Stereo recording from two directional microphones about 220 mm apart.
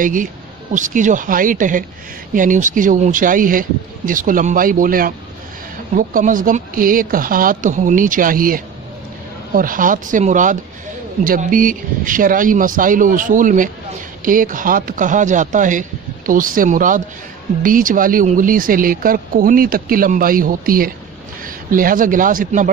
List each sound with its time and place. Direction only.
0.0 s a man's voice: 35° right (ahead or behind)